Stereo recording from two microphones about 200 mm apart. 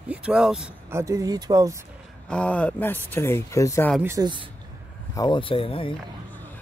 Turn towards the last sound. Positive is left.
turn(degrees=25)  # may be behind; listen again after turning